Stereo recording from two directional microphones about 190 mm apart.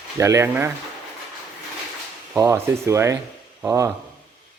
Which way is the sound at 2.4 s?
15° right (ahead or behind).